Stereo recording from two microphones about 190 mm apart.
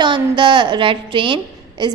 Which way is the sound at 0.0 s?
25° right (ahead or behind).